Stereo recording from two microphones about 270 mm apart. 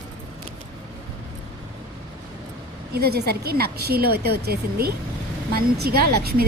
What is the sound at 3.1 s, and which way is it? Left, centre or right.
A woman's voice, right.